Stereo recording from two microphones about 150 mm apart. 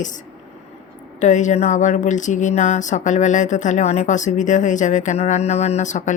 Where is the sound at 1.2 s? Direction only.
55° left (ahead or behind).